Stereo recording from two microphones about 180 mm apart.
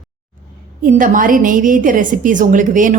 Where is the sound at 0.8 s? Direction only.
50° right (ahead or behind).